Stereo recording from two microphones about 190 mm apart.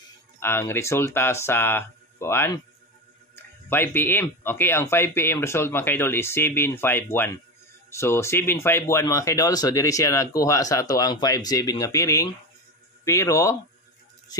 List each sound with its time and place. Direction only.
0.4 s speech: 10° left (ahead or behind)
3.6 s speech: 10° left (ahead or behind)